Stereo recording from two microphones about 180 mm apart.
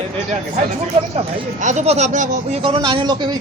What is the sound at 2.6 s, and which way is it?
Speech, 25° right (ahead or behind).